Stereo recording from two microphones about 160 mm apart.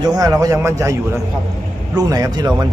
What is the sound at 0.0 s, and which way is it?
A man's voice, 25° right (ahead or behind).